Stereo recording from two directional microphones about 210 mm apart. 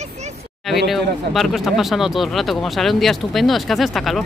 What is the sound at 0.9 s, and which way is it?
Speech, centre (ahead or behind).